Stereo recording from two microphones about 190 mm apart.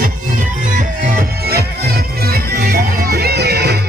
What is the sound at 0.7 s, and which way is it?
Music, 45° right (ahead or behind).